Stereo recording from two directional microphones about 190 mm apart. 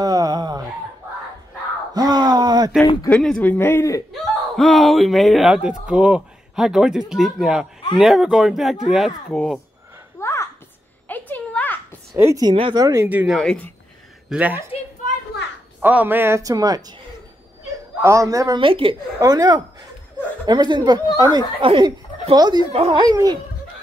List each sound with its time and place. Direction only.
0.0 s a sound: 20° right (ahead or behind)
2.0 s a sound: 20° right (ahead or behind)
3.1 s speech: 5° left (ahead or behind)
4.1 s speech: centre (ahead or behind)
10.2 s a sound: 15° left (ahead or behind)
12.2 s speech: 15° right (ahead or behind)
13.4 s speech: 5° left (ahead or behind)
14.3 s speech: 10° right (ahead or behind)
15.8 s speech: 10° right (ahead or behind)